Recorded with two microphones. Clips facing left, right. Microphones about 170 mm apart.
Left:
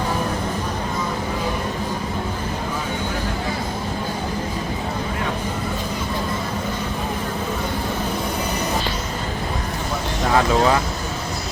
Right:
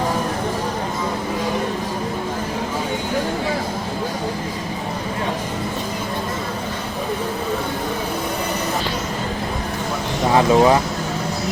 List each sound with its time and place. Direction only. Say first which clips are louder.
10.3 s speech: right 4 dB; 20° right (ahead or behind)